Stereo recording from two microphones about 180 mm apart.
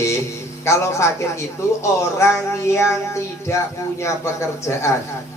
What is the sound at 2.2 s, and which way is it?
Speech, 15° left (ahead or behind).